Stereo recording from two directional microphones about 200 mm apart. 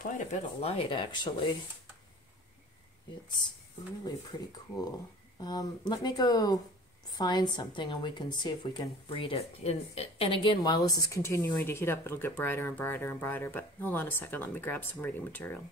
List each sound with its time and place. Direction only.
0.0 s speech: 30° left (ahead or behind)
4.0 s a woman's voice: 20° left (ahead or behind)